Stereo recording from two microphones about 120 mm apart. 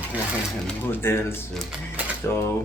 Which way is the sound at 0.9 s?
20° left (ahead or behind).